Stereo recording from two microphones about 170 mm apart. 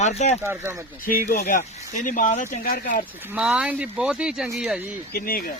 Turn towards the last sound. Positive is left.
turn(degrees=60)  # may be behind; listen again after turning